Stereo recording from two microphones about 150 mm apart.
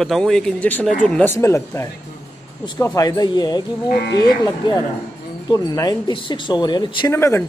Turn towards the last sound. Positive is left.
turn(degrees=15)  # may be behind; listen again after turning